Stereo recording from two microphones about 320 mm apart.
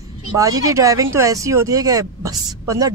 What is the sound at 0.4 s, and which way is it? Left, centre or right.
A woman's voice, centre.